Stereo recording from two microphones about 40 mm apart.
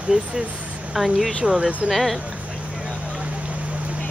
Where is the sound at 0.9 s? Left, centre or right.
Centre.